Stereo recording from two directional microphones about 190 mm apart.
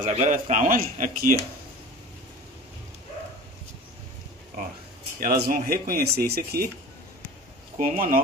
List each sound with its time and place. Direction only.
0.0 s speech: 40° right (ahead or behind)
5.2 s speech: 50° right (ahead or behind)
7.7 s speech: 45° right (ahead or behind)